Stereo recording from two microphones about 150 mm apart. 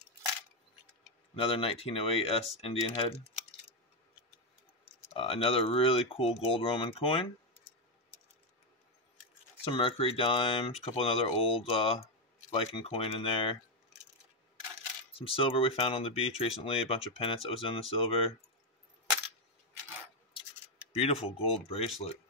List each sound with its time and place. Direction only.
1.3 s speech: 40° left (ahead or behind)
5.1 s speech: 40° left (ahead or behind)
9.7 s speech: 35° left (ahead or behind)
15.1 s speech: 40° left (ahead or behind)
20.9 s speech: 45° left (ahead or behind)